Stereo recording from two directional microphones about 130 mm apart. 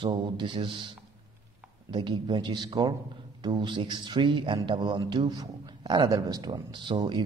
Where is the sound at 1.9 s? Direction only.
35° right (ahead or behind).